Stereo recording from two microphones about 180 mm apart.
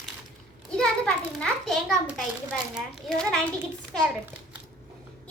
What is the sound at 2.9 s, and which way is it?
A child's voice, 5° left (ahead or behind).